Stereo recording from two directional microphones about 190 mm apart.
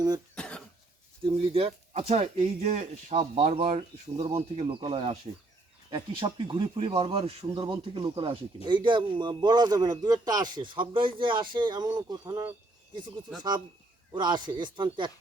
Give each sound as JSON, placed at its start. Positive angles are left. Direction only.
{"t": 0.3, "sound": "cough", "side_deg": 5}
{"t": 1.2, "sound": "speech", "side_deg": -30}
{"t": 14.1, "sound": "speech", "side_deg": -25}